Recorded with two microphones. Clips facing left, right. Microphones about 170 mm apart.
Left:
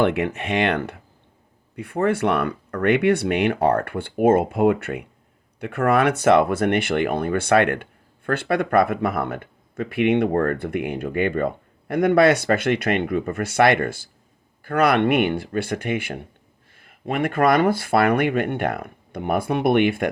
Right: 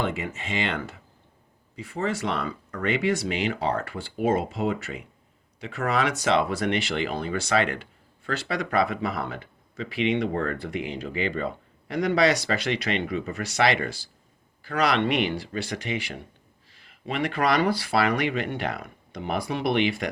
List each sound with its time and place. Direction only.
0.0 s speech: 65° left (ahead or behind)